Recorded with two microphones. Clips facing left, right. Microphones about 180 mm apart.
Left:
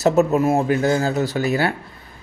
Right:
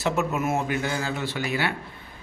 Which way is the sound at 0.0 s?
40° left (ahead or behind).